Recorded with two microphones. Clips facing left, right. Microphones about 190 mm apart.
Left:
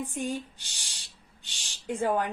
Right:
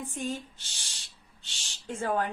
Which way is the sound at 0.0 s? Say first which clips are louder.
Left 2 dB; 15° left (ahead or behind).